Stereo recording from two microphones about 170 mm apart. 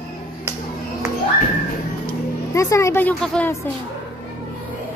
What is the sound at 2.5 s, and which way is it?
A woman's voice, 15° left (ahead or behind).